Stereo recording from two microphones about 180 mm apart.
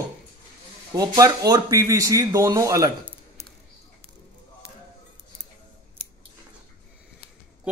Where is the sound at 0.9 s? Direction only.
20° right (ahead or behind).